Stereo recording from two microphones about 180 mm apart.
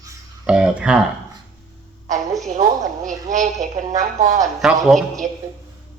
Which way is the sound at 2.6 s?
50° right (ahead or behind).